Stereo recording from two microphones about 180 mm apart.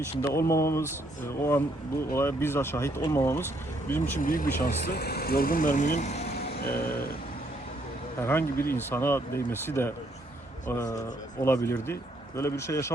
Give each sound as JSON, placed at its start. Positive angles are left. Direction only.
{"t": 0.2, "sound": "speech", "side_deg": 15}
{"t": 4.2, "sound": "speech", "side_deg": 50}
{"t": 8.2, "sound": "speech", "side_deg": 15}